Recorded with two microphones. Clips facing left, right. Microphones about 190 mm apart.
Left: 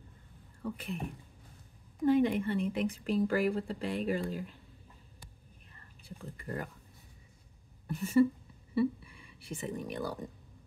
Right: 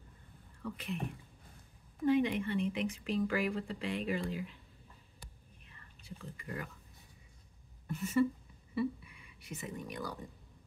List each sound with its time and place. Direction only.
0.6 s speech: 45° left (ahead or behind)
2.0 s speech: 45° left (ahead or behind)
5.7 s whispering: 45° left (ahead or behind)
7.8 s a sound: 35° left (ahead or behind)
8.7 s speech: 30° left (ahead or behind)